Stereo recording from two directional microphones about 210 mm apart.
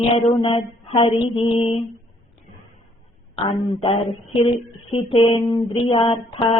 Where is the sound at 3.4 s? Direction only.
25° left (ahead or behind).